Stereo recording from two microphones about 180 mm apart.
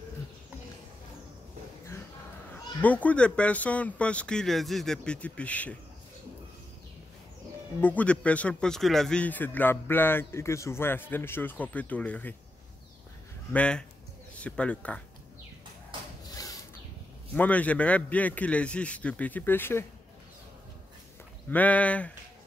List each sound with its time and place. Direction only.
2.5 s a man's voice: 10° left (ahead or behind)
7.8 s a man's voice: 10° left (ahead or behind)
13.5 s a man's voice: 5° left (ahead or behind)
16.3 s a sound: 20° left (ahead or behind)
17.3 s a man's voice: 10° left (ahead or behind)
21.5 s a man's voice: 10° left (ahead or behind)